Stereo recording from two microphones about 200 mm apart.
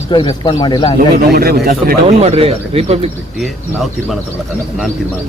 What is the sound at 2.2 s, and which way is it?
Speech, 30° right (ahead or behind).